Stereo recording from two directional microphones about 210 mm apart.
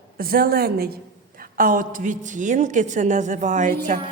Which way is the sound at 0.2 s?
45° right (ahead or behind).